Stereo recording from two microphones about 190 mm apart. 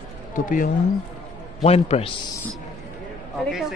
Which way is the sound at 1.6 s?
35° left (ahead or behind).